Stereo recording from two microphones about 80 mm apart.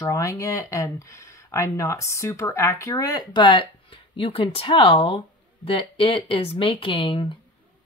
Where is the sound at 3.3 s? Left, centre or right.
Left.